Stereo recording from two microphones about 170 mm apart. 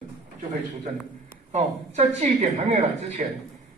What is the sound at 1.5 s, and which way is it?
Speech, 40° right (ahead or behind).